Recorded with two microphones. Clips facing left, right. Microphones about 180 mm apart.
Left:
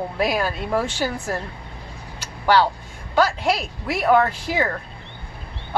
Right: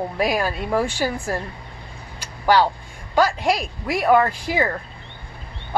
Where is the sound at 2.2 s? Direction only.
10° right (ahead or behind).